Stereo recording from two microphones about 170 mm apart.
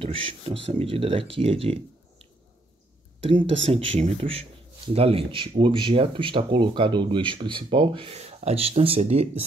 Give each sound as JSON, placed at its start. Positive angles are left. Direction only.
{"t": 0.0, "sound": "speech", "side_deg": -35}